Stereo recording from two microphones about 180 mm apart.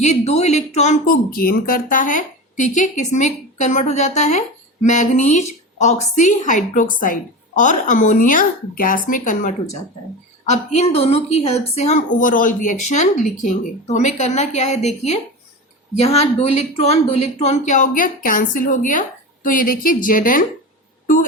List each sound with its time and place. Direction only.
0.0 s speech: 40° left (ahead or behind)